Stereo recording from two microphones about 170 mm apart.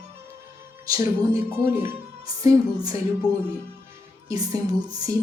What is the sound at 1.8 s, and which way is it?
Speech, 20° right (ahead or behind).